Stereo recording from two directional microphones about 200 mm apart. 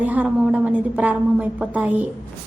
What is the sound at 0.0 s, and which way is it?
A woman's voice, 5° right (ahead or behind).